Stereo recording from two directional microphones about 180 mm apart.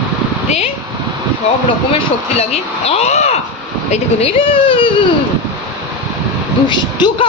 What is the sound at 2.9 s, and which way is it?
A woman's voice, 35° left (ahead or behind).